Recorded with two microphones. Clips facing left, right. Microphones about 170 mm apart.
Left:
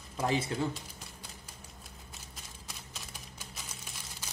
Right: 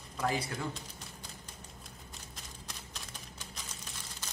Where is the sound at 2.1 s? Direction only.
5° left (ahead or behind).